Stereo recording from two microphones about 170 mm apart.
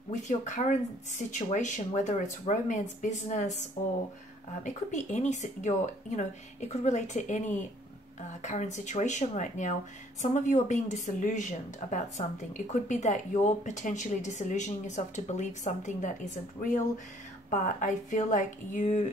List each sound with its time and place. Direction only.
0.1 s speech: 45° left (ahead or behind)